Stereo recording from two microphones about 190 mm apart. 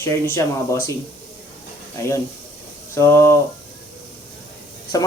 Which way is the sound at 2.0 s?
15° left (ahead or behind).